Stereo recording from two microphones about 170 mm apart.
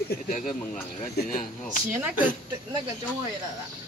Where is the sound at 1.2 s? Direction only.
50° left (ahead or behind).